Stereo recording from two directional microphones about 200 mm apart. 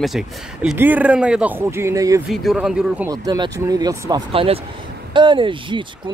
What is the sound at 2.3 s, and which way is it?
Speech, centre (ahead or behind).